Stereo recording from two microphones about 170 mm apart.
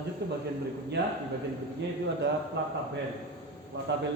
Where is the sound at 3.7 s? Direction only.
90° right.